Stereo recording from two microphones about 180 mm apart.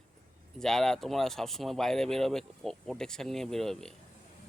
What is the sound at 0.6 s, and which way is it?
Speech, 5° left (ahead or behind).